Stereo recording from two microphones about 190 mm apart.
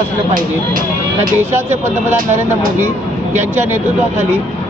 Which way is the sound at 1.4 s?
10° right (ahead or behind).